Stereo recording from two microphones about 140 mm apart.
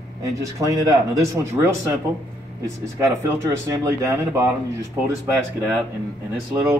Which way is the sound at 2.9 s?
20° right (ahead or behind).